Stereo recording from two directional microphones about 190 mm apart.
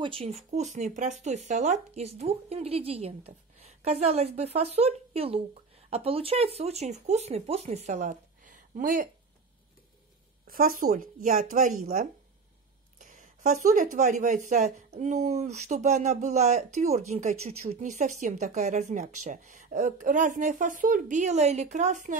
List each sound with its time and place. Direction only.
0.0 s a woman's voice: 30° right (ahead or behind)
10.4 s a woman's voice: 50° right (ahead or behind)